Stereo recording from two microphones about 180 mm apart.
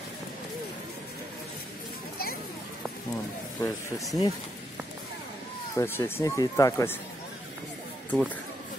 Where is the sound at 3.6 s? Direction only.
20° left (ahead or behind).